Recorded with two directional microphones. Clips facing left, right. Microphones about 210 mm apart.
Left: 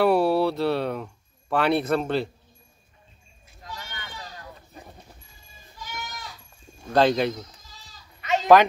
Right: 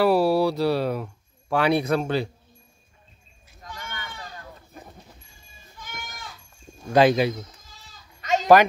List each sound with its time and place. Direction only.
0.0 s speech: 5° right (ahead or behind)
3.6 s run: 50° right (ahead or behind)
5.8 s goat: 50° right (ahead or behind)
6.9 s speech: 10° right (ahead or behind)
7.6 s goat: 50° right (ahead or behind)